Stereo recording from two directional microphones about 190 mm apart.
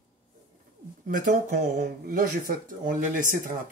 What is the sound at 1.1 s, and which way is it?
Speech, 40° right (ahead or behind).